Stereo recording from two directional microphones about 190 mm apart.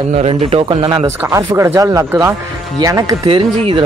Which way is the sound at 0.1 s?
30° right (ahead or behind).